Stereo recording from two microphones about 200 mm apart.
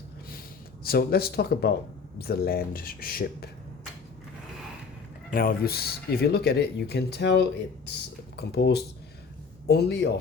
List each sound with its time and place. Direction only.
0.9 s speech: 50° left (ahead or behind)
5.3 s speech: 45° left (ahead or behind)